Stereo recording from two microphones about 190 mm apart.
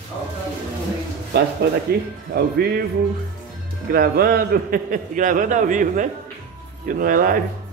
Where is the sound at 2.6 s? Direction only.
60° right (ahead or behind).